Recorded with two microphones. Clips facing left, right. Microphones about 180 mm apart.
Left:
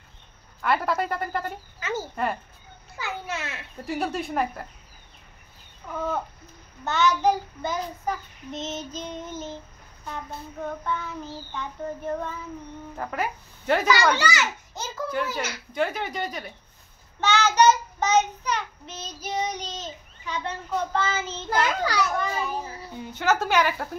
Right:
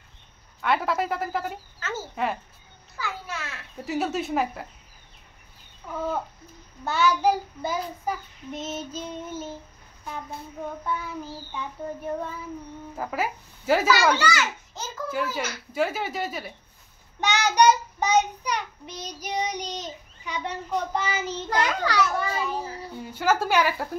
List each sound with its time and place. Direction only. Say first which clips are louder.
0.6 s a woman's voice: even; centre (ahead or behind)
1.8 s a child's voice: left 1 dB; 15° left (ahead or behind)
3.7 s a woman's voice: right 2 dB; centre (ahead or behind)
5.9 s child singing: even; 5° right (ahead or behind)
12.9 s child singing: right 1 dB; 5° right (ahead or behind)
14.1 s a child's voice: right 1 dB; 10° left (ahead or behind)
15.0 s child singing: even; 5° right (ahead or behind)
15.7 s a woman's voice: right 1 dB; 5° right (ahead or behind)
17.2 s child singing: left 1 dB; 15° right (ahead or behind)
21.5 s a child's voice: left 1 dB; 5° left (ahead or behind)
23.1 s child singing: even; 10° right (ahead or behind)